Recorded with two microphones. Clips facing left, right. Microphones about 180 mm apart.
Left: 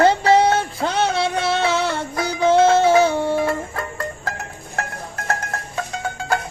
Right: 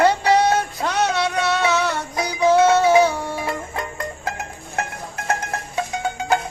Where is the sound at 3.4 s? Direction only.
20° right (ahead or behind).